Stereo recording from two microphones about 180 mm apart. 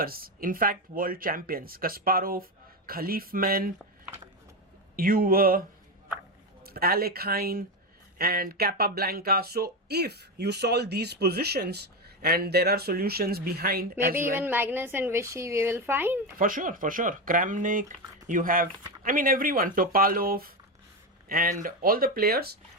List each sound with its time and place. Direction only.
0.0 s speech: 55° right (ahead or behind)
4.9 s speech: 55° right (ahead or behind)
6.7 s speech: 55° right (ahead or behind)
14.3 s a woman's voice: 10° right (ahead or behind)
16.4 s speech: 50° right (ahead or behind)